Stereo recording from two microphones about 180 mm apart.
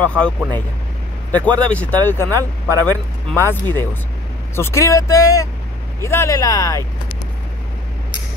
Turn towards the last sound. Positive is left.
turn(degrees=20)  # may be behind; listen again after turning